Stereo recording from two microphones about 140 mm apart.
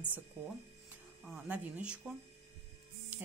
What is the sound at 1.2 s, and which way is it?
Speech, 10° right (ahead or behind).